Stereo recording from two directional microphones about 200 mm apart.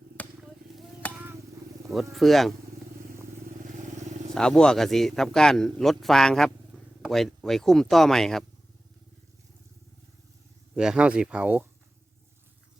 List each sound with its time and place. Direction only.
0.2 s vehicle: 5° left (ahead or behind)
0.7 s a sound: centre (ahead or behind)
2.1 s a man's voice: centre (ahead or behind)
3.6 s vehicle: 40° right (ahead or behind)
4.4 s a man's voice: 5° left (ahead or behind)
10.8 s a man's voice: 5° right (ahead or behind)